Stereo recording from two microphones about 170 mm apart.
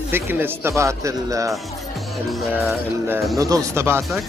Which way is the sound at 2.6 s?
15° right (ahead or behind).